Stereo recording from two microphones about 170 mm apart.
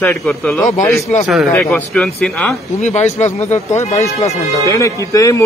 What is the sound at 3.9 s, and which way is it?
Speech, 40° left (ahead or behind).